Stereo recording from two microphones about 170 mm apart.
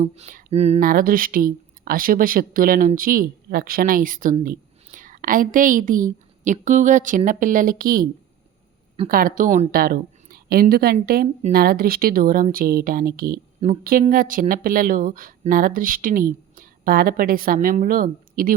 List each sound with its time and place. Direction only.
0.0 s a sound: 45° right (ahead or behind)
0.8 s speech: 55° right (ahead or behind)
9.0 s a woman's voice: 55° right (ahead or behind)